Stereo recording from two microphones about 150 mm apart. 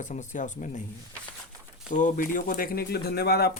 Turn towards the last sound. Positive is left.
turn(degrees=90)